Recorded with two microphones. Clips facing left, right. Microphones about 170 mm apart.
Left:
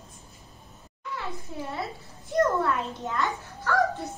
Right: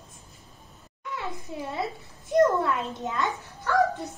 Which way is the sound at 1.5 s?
20° right (ahead or behind).